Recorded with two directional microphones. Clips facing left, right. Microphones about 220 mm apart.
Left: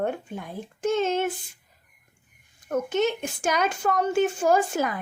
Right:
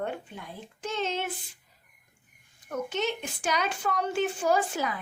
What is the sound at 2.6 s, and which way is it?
A woman's voice, 50° left (ahead or behind).